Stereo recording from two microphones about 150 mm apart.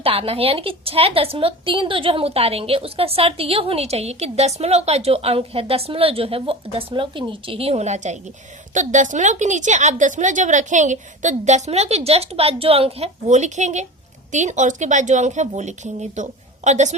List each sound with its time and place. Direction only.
0.0 s a woman's voice: 40° right (ahead or behind)